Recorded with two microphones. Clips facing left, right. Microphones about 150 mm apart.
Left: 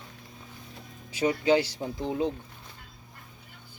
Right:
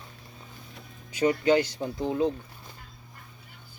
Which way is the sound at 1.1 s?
10° left (ahead or behind).